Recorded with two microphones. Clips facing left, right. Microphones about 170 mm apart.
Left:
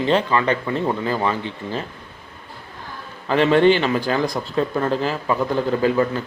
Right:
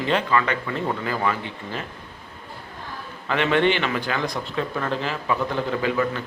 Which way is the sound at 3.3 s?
35° left (ahead or behind).